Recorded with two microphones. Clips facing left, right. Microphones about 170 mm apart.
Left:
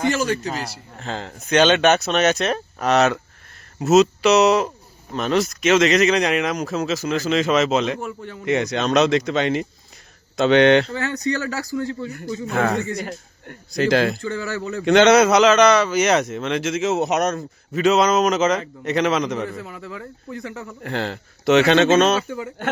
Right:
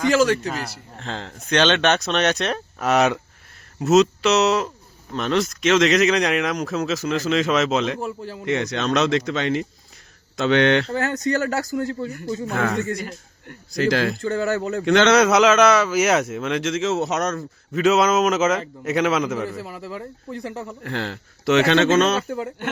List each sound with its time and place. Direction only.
0.1 s a man's voice: 90° right
0.6 s speech: 5° left (ahead or behind)
3.8 s speech: 5° left (ahead or behind)
8.0 s speech: 35° right (ahead or behind)
8.4 s speech: 10° left (ahead or behind)
10.9 s speech: 45° right (ahead or behind)
13.0 s a man's voice: 50° left (ahead or behind)
13.7 s speech: 20° left (ahead or behind)
14.2 s speech: 50° right (ahead or behind)
14.8 s speech: 15° left (ahead or behind)
15.2 s speech: centre (ahead or behind); by 17.4 s 15° left (ahead or behind)
17.7 s speech: 5° right (ahead or behind)
19.9 s speech: 30° right (ahead or behind)
20.8 s speech: 20° left (ahead or behind)